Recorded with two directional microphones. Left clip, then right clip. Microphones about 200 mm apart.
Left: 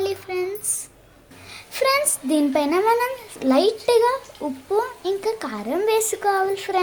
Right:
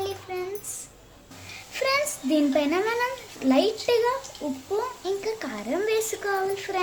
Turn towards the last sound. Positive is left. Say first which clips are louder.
# left 5 dB
turn(degrees=20)  # may be behind; listen again after turning